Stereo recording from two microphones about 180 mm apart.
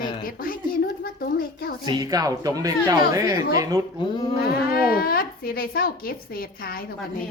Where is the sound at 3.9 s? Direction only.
25° left (ahead or behind).